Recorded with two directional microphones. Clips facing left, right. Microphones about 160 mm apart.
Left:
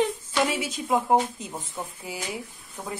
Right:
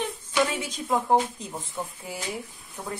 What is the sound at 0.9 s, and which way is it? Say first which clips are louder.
Speech: left 1 dB; centre (ahead or behind).